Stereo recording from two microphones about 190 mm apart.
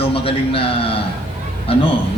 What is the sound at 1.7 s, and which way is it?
Speech, 30° left (ahead or behind).